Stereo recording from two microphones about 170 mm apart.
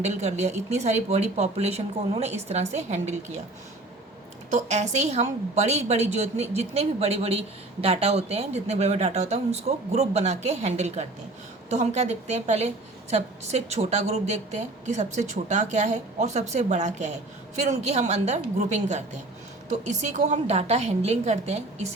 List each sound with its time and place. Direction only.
0.0 s a woman's voice: 40° right (ahead or behind)
4.5 s a woman's voice: 40° right (ahead or behind)